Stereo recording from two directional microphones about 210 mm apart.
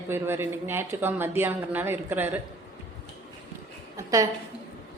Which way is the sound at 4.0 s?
15° right (ahead or behind).